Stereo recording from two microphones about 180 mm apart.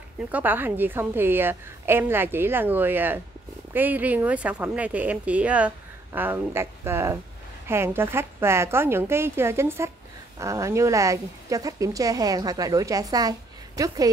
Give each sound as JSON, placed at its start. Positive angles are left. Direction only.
{"t": 0.3, "sound": "a woman's voice", "side_deg": -10}